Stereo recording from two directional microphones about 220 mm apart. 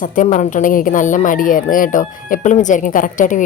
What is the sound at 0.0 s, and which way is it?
Speech, 35° left (ahead or behind).